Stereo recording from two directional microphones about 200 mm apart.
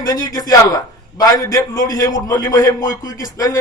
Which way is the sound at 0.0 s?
20° left (ahead or behind).